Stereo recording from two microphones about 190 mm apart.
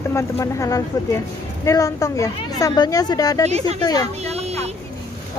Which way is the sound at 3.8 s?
20° left (ahead or behind).